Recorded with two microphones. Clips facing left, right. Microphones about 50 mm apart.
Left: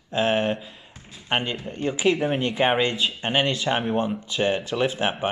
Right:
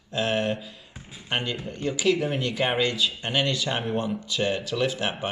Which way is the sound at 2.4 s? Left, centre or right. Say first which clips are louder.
Left 3 dB; left.